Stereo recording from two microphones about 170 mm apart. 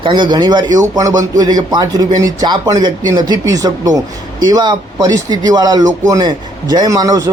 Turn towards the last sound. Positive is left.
turn(degrees=-20)  # may be behind; listen again after turning